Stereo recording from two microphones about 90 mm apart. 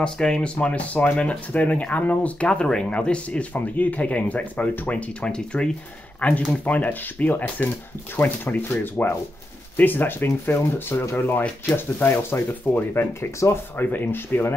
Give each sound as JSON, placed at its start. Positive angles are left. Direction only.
{"t": 0.0, "sound": "speech", "side_deg": 10}